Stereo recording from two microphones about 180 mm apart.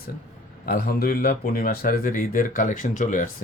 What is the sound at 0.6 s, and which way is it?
Speech, 55° left (ahead or behind).